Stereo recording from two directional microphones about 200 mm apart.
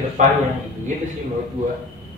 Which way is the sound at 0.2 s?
40° right (ahead or behind).